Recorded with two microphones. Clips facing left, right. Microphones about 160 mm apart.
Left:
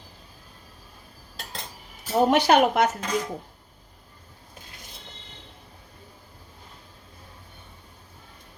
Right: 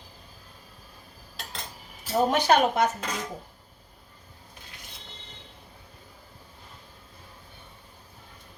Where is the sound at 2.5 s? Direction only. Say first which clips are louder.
Left 2 dB; 70° left (ahead or behind).